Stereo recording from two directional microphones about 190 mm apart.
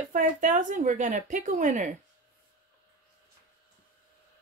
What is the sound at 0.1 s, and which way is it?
Speech, 45° right (ahead or behind).